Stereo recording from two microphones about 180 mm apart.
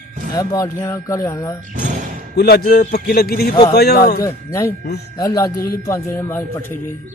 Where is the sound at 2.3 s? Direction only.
60° left (ahead or behind).